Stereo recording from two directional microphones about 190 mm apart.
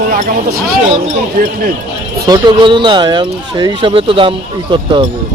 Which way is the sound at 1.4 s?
50° right (ahead or behind).